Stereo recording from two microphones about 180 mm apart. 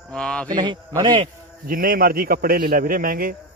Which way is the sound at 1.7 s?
55° right (ahead or behind).